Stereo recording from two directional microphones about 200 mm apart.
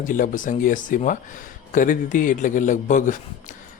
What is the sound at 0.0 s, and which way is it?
Speech, 40° left (ahead or behind).